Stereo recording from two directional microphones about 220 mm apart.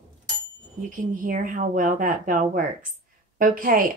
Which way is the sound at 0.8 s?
35° right (ahead or behind).